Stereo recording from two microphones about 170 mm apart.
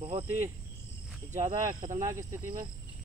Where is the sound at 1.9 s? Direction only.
15° right (ahead or behind).